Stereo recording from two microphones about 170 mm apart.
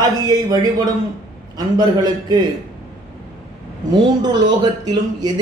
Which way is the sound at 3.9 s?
25° right (ahead or behind).